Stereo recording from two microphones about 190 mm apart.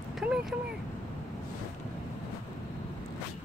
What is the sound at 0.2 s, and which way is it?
Vehicle, 5° right (ahead or behind).